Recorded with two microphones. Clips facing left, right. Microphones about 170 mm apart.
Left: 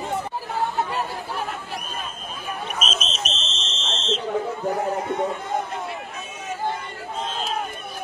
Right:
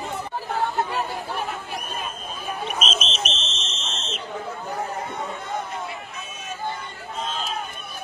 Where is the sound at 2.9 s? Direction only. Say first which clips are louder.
Right 1 dB; 35° left (ahead or behind).